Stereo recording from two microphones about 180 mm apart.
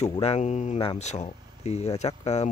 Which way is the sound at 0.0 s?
35° left (ahead or behind).